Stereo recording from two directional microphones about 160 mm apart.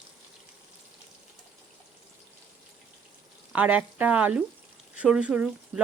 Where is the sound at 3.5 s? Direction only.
10° right (ahead or behind).